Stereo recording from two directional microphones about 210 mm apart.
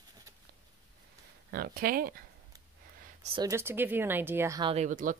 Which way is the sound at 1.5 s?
45° right (ahead or behind).